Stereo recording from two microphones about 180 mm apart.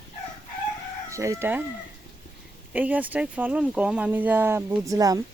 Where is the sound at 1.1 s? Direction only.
15° right (ahead or behind).